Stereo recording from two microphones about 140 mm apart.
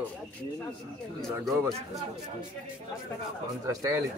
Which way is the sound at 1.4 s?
Centre (ahead or behind).